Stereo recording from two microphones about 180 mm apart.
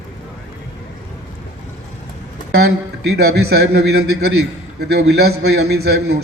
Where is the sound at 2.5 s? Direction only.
65° right (ahead or behind).